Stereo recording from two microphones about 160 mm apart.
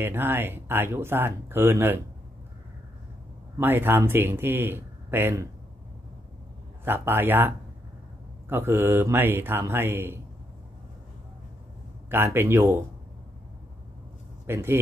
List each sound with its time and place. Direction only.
0.0 s speech: 15° right (ahead or behind)
3.5 s speech: 15° right (ahead or behind)
6.8 s speech: 15° right (ahead or behind)
12.1 s speech: 15° right (ahead or behind)
14.4 s speech: 15° right (ahead or behind)